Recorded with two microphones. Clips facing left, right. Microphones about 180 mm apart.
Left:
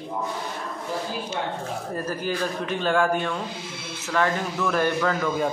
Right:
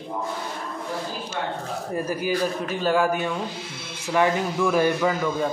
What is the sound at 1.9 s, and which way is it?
A man's voice, 10° right (ahead or behind).